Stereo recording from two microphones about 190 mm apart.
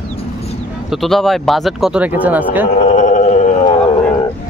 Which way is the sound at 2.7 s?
40° left (ahead or behind).